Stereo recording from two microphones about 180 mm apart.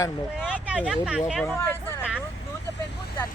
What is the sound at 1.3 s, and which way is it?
Speech, centre (ahead or behind).